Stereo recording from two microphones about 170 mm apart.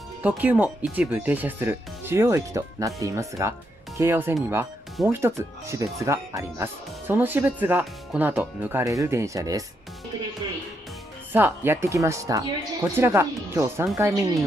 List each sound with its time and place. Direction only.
0.2 s speech: 10° right (ahead or behind)
11.3 s speech: 15° right (ahead or behind)